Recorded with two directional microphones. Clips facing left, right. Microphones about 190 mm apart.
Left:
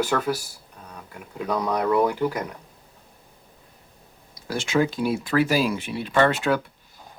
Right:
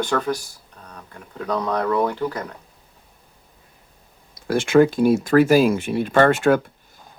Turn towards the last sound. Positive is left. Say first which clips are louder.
# right 5 dB
turn(degrees=-50)  # may be behind; listen again after turning